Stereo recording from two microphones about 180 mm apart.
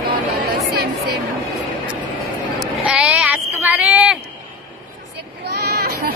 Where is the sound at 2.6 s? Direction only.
5° right (ahead or behind).